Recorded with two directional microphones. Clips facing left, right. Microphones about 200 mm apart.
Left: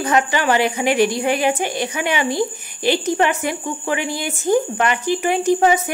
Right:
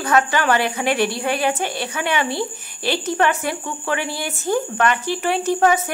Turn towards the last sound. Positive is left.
turn(degrees=15)  # may be behind; listen again after turning